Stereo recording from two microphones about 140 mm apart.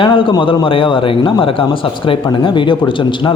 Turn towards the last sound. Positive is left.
turn(degrees=35)  # may be behind; listen again after turning